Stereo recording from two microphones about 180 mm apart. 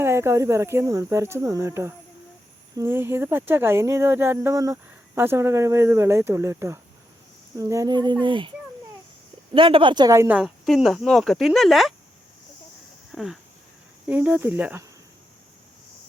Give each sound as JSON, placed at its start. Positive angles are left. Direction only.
{"t": 0.0, "sound": "speech", "side_deg": -15}
{"t": 9.6, "sound": "speech", "side_deg": -30}
{"t": 13.1, "sound": "a sound", "side_deg": 0}
{"t": 14.1, "sound": "speech", "side_deg": -10}